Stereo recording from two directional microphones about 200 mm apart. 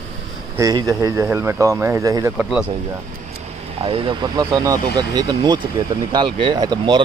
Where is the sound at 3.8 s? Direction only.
25° right (ahead or behind).